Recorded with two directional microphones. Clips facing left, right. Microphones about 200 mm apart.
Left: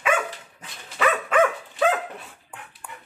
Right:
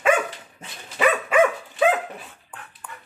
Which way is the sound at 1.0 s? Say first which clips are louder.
Right 2 dB; 10° right (ahead or behind).